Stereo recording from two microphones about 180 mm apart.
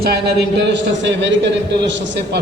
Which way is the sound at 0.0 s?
65° right (ahead or behind).